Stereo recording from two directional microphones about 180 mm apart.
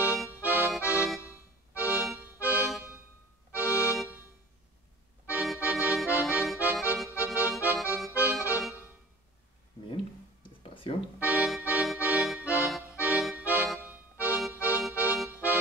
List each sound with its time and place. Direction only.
0.3 s accordion: 10° right (ahead or behind)
1.0 s music: 5° right (ahead or behind)
1.3 s music: 15° left (ahead or behind)
2.0 s accordion: 5° right (ahead or behind)
2.5 s music: 10° right (ahead or behind)
3.5 s accordion: 15° left (ahead or behind)
3.9 s music: 5° right (ahead or behind)
5.2 s accordion: 5° right (ahead or behind)
8.5 s music: 5° right (ahead or behind)
10.6 s music: 30° left (ahead or behind)
11.1 s accordion: 5° right (ahead or behind)